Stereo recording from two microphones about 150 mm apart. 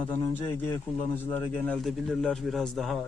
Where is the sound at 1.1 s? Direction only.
15° left (ahead or behind).